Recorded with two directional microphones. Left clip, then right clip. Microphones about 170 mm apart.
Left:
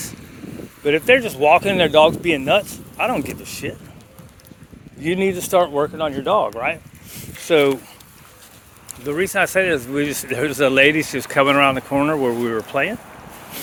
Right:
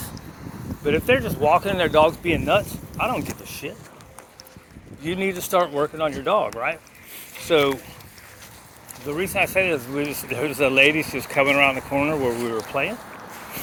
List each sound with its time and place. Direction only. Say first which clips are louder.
0.9 s speech: left 5 dB; 50° left (ahead or behind)
5.0 s speech: left 5 dB; 55° left (ahead or behind)
5.8 s speech: left 2 dB; 35° left (ahead or behind)
9.0 s speech: left 4 dB; 50° left (ahead or behind)